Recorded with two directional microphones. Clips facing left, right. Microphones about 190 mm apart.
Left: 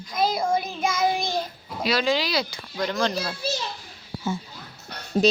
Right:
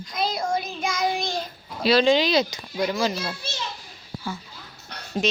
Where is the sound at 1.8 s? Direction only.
25° right (ahead or behind).